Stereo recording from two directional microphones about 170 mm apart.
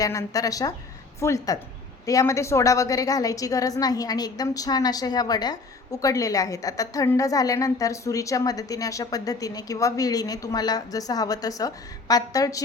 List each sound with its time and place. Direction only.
0.0 s a woman's voice: 20° left (ahead or behind)